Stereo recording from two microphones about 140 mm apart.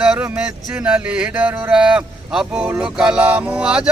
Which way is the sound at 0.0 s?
10° right (ahead or behind).